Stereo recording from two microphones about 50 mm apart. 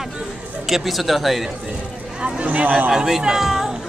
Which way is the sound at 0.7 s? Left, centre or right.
Centre.